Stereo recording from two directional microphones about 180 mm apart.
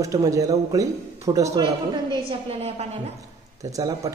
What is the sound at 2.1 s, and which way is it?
A woman's voice, 35° right (ahead or behind).